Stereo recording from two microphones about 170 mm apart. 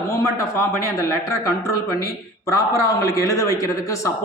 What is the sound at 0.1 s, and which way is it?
A man's voice, 20° left (ahead or behind).